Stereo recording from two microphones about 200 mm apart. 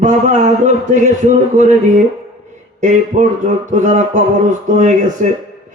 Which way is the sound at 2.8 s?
40° right (ahead or behind).